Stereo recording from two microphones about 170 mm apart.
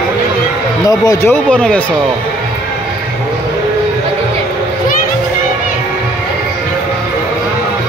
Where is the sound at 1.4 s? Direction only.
5° left (ahead or behind).